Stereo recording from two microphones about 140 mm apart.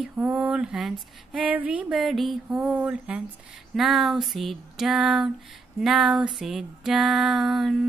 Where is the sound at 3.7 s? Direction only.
Centre (ahead or behind).